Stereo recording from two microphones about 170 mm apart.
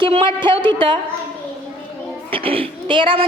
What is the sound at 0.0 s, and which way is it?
Speech, 30° right (ahead or behind).